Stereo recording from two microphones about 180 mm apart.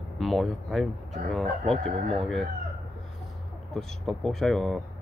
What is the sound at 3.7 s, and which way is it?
Speech, centre (ahead or behind).